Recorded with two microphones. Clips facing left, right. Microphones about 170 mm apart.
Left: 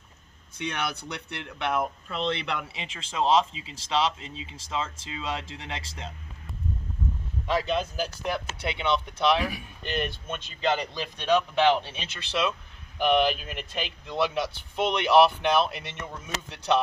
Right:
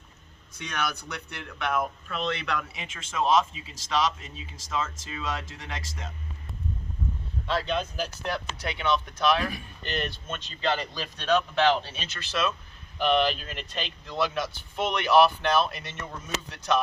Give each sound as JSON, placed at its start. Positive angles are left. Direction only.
{"t": 0.5, "sound": "speech", "side_deg": 25}
{"t": 7.4, "sound": "speech", "side_deg": 10}
{"t": 8.6, "sound": "speech", "side_deg": 20}
{"t": 9.5, "sound": "speech", "side_deg": 10}
{"t": 14.2, "sound": "speech", "side_deg": 25}